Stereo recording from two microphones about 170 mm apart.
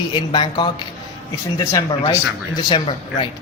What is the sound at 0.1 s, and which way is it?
Speech, 30° left (ahead or behind).